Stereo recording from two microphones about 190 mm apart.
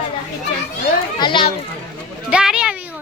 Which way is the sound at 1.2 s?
25° left (ahead or behind).